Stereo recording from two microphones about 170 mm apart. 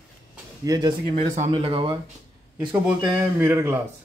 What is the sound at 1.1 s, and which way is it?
Speech, 40° right (ahead or behind).